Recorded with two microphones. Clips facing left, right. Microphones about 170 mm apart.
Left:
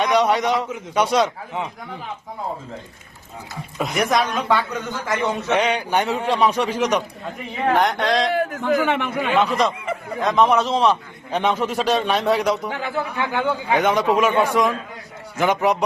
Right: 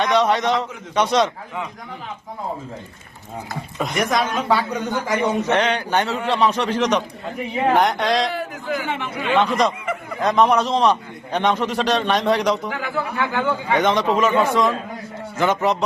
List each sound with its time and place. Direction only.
0.0 s a man's voice: 10° left (ahead or behind)
3.8 s a man's voice: centre (ahead or behind); by 5.5 s 15° right (ahead or behind)
5.5 s a man's voice: 10° left (ahead or behind)
8.3 s a man's voice: 55° left (ahead or behind)
9.3 s a man's voice: centre (ahead or behind)
12.8 s a man's voice: 20° left (ahead or behind)